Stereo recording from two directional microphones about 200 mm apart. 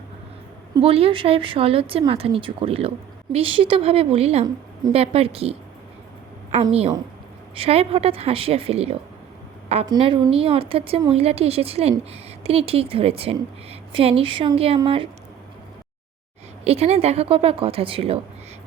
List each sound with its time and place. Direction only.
0.7 s a woman's voice: 30° right (ahead or behind)
16.6 s speech: 30° right (ahead or behind)